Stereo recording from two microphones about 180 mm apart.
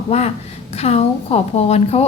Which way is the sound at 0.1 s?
35° left (ahead or behind).